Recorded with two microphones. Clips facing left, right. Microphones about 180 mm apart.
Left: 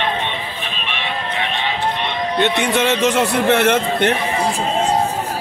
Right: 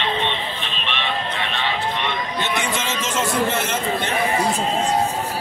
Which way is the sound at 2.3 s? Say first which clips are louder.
Left 10 dB; 65° left (ahead or behind).